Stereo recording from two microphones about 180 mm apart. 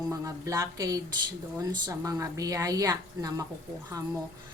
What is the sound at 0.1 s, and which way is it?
A woman's voice, 15° right (ahead or behind).